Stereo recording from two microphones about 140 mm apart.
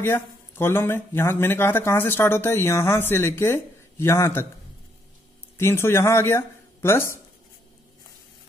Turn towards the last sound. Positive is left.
turn(degrees=15)  # may be behind; listen again after turning